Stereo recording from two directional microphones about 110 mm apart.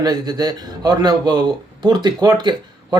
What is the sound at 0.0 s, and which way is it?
Speech, 40° right (ahead or behind).